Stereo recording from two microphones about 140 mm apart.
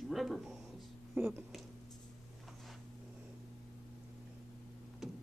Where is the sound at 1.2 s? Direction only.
15° right (ahead or behind).